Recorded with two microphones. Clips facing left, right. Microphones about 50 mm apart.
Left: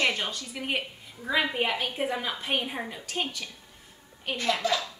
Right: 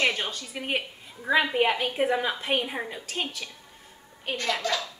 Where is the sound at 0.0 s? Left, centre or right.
Centre.